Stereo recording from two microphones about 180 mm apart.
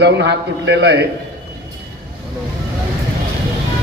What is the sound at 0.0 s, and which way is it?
A man's voice, 75° right (ahead or behind).